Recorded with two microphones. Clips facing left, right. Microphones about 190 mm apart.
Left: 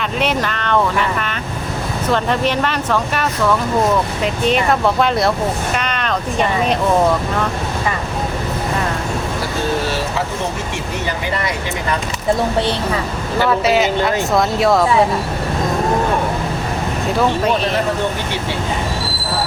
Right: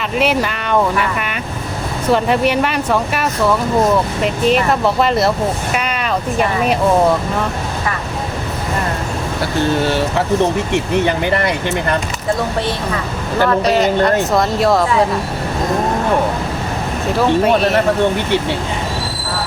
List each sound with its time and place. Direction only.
0.2 s speech: 5° right (ahead or behind)
2.0 s speech: 10° right (ahead or behind)
11.0 s speech: 60° right (ahead or behind)
13.4 s speech: 5° left (ahead or behind)